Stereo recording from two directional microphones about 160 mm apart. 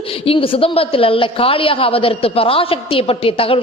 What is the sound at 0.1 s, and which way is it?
A woman's voice, 35° left (ahead or behind).